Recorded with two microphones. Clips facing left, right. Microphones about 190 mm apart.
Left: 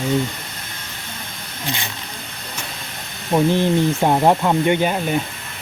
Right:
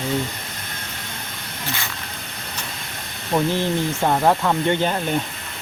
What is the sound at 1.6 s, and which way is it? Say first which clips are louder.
Speech: left 3 dB; 20° left (ahead or behind).